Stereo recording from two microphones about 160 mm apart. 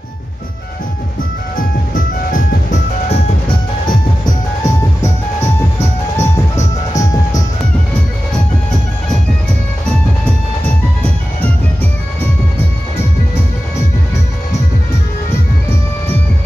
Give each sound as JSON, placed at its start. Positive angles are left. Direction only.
{"t": 1.6, "sound": "music", "side_deg": 55}
{"t": 3.1, "sound": "music", "side_deg": 30}